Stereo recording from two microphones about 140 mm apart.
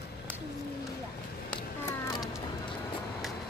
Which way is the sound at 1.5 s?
25° left (ahead or behind).